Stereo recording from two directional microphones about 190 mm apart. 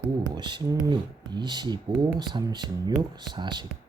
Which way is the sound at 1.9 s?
10° right (ahead or behind).